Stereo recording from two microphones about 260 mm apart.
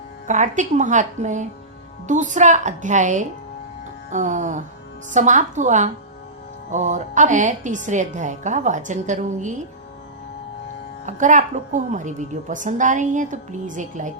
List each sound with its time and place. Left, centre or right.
0.3 s a woman's voice: right
11.0 s a woman's voice: right